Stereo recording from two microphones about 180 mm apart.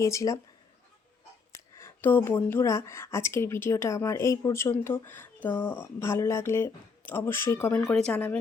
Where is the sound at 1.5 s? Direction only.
15° left (ahead or behind).